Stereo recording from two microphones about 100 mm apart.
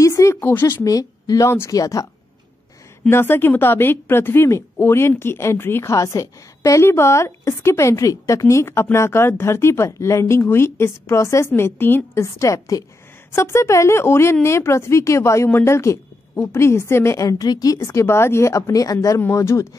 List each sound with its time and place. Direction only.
0.0 s a sound: 30° left (ahead or behind)
0.5 s a woman's voice: 20° left (ahead or behind)
0.8 s a woman's voice: 35° left (ahead or behind)
3.1 s a woman's voice: 25° left (ahead or behind)